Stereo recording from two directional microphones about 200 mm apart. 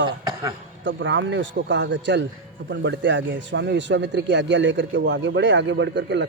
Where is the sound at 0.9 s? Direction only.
65° right (ahead or behind).